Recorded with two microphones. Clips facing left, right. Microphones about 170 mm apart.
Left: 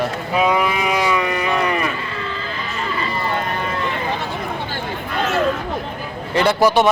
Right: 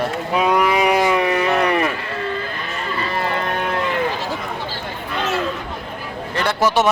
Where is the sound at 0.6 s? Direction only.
70° right (ahead or behind); by 2.5 s 50° right (ahead or behind).